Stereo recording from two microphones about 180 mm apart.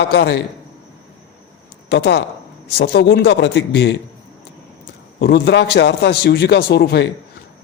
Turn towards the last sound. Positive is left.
turn(degrees=65)  # may be behind; listen again after turning